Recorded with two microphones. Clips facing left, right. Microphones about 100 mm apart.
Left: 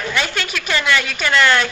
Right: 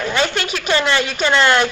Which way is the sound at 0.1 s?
30° right (ahead or behind).